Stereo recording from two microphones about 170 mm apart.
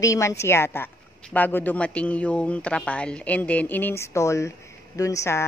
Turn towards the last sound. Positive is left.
turn(degrees=15)  # may be behind; listen again after turning